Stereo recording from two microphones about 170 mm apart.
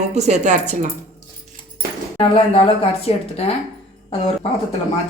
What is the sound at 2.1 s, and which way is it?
Speech, 35° left (ahead or behind).